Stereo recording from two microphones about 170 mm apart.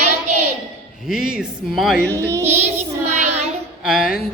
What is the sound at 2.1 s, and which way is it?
Speech, 15° right (ahead or behind).